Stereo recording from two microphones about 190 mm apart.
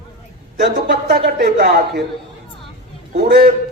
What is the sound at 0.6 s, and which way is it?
A man's voice, 55° right (ahead or behind).